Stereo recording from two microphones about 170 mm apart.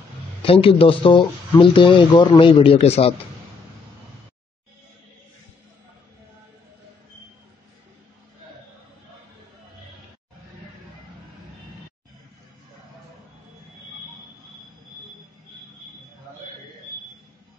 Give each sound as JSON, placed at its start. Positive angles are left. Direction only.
{"t": 0.4, "sound": "speech", "side_deg": 35}